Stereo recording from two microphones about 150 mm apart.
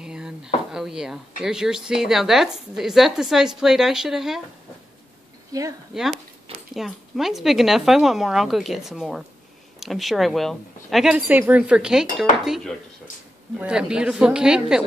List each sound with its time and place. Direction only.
0.0 s a sound: 5° right (ahead or behind)
0.7 s speech: 5° right (ahead or behind)
5.5 s a woman's voice: 20° right (ahead or behind)
6.7 s speech: centre (ahead or behind)